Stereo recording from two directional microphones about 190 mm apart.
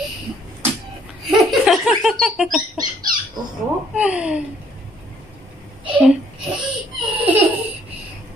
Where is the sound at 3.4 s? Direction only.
20° right (ahead or behind).